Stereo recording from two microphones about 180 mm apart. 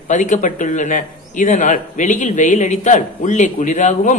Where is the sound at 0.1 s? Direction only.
45° left (ahead or behind).